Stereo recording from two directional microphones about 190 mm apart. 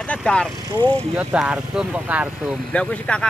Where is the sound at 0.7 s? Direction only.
25° right (ahead or behind).